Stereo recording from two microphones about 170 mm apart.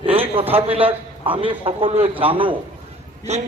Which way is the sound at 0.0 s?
35° right (ahead or behind).